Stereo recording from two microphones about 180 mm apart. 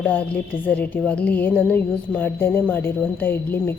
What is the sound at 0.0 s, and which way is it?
A woman's voice, 10° left (ahead or behind).